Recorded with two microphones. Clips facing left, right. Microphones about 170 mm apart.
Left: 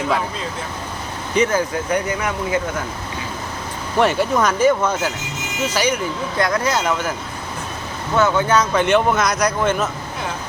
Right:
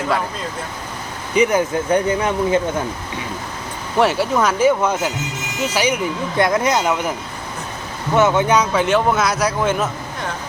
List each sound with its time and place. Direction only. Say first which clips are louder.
1.4 s speech: right 2 dB; 20° right (ahead or behind)
3.9 s speech: even; 5° right (ahead or behind)
6.3 s speech: right 3 dB; 20° right (ahead or behind)
8.1 s speech: right 2 dB; 20° right (ahead or behind)
8.7 s speech: even; centre (ahead or behind)